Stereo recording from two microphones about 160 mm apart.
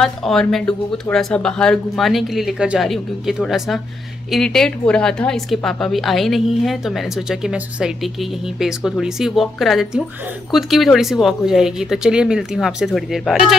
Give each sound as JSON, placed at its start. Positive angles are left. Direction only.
{"t": 0.0, "sound": "a woman's voice", "side_deg": 0}